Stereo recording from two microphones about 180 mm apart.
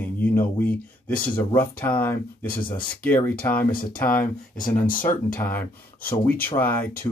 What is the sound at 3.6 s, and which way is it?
Speech, 55° left (ahead or behind).